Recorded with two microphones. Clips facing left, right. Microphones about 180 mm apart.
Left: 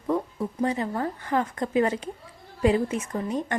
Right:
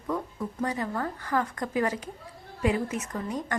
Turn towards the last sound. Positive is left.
turn(degrees=30)  # may be behind; listen again after turning